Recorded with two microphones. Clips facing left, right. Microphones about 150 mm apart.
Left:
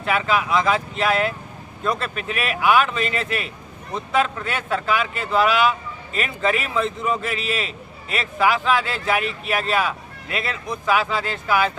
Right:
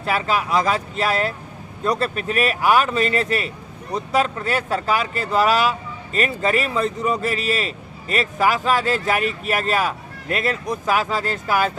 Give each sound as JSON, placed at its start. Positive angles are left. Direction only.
{"t": 0.0, "sound": "a man's voice", "side_deg": -35}